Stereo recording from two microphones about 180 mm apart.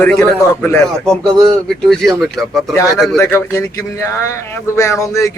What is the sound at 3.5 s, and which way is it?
Speech, 15° left (ahead or behind).